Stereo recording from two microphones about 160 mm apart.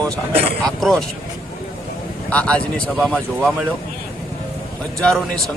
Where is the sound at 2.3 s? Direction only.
5° left (ahead or behind).